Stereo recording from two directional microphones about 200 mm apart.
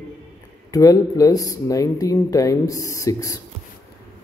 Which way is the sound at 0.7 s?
15° left (ahead or behind).